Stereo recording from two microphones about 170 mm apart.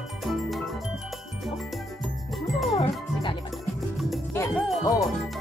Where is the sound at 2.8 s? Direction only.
30° left (ahead or behind).